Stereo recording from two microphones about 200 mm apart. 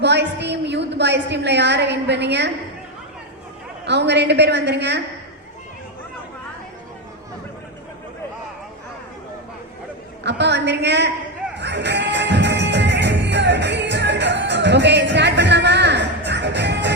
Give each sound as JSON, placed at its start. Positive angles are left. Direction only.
{"t": 0.0, "sound": "a woman's voice", "side_deg": -60}
{"t": 3.8, "sound": "a woman's voice", "side_deg": -60}
{"t": 10.2, "sound": "a woman's voice", "side_deg": -60}
{"t": 11.5, "sound": "music", "side_deg": -60}